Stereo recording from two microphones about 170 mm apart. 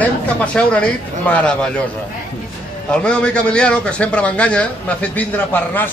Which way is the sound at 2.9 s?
5° left (ahead or behind).